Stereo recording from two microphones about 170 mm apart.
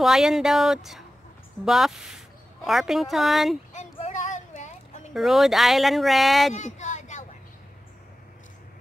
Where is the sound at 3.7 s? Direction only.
45° left (ahead or behind).